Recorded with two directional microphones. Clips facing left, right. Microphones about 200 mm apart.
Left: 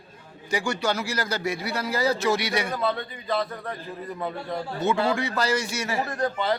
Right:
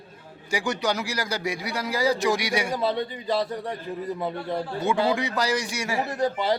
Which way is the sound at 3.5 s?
15° right (ahead or behind).